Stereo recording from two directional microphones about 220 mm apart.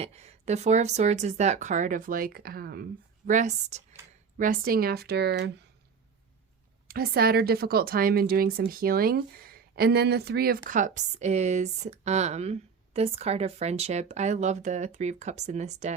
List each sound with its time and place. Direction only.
0.0 s a woman's voice: 30° right (ahead or behind); by 5.5 s 50° right (ahead or behind)
6.8 s a woman's voice: 45° right (ahead or behind)